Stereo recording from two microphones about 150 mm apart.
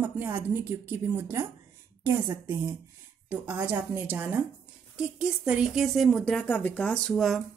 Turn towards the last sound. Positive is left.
turn(degrees=0)  # may be behind; listen again after turning